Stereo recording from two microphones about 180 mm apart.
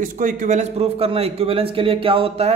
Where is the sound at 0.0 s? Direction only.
50° right (ahead or behind).